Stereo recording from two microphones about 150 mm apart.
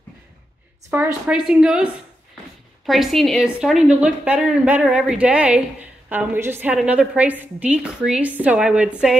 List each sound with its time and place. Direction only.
0.8 s a woman's voice: 15° right (ahead or behind)
2.9 s a woman's voice: centre (ahead or behind)